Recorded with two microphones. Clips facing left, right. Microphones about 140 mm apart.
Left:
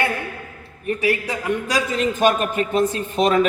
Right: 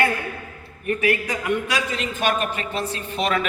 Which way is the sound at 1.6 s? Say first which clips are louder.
Left 5 dB; 40° left (ahead or behind).